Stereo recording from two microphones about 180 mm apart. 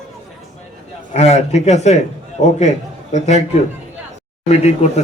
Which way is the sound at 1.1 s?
40° left (ahead or behind).